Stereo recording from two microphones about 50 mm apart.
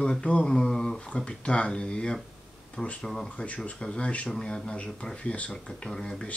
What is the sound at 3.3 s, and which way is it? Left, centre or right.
Speech, left.